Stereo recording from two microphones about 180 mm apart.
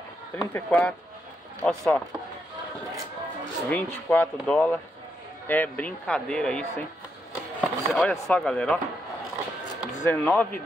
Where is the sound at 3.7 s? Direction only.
5° left (ahead or behind).